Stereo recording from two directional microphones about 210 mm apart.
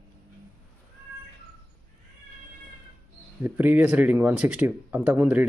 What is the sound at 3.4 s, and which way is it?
Speech, 10° right (ahead or behind).